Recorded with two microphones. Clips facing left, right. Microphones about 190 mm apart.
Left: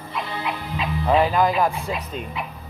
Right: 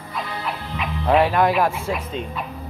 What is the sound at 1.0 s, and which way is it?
Speech, centre (ahead or behind).